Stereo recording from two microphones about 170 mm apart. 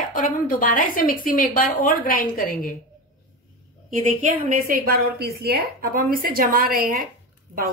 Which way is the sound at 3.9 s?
50° right (ahead or behind).